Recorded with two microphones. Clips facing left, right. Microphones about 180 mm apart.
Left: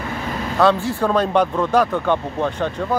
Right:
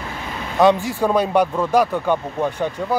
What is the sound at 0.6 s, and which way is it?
Speech, 15° right (ahead or behind).